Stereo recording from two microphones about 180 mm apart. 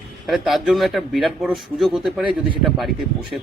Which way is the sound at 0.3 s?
Centre (ahead or behind).